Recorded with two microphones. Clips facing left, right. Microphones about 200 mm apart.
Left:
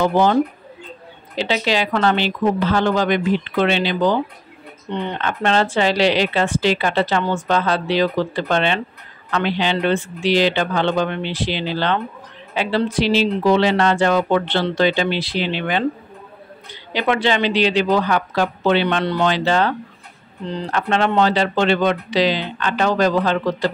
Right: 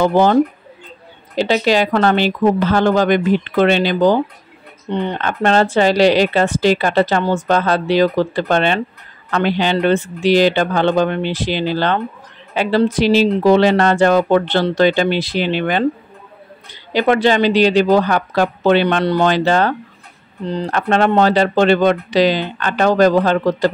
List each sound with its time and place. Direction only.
0.0 s speech: 50° right (ahead or behind)
16.9 s speech: 45° right (ahead or behind)
20.7 s speech: 45° right (ahead or behind)